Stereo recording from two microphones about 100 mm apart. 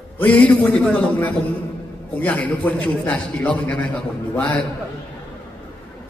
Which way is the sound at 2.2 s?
15° left (ahead or behind).